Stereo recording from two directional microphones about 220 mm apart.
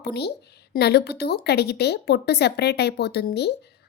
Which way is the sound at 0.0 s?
45° left (ahead or behind).